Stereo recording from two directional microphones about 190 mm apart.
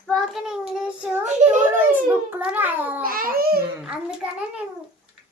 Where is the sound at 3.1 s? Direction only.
50° right (ahead or behind).